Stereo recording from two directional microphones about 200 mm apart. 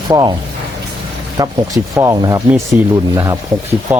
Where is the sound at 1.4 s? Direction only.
15° right (ahead or behind).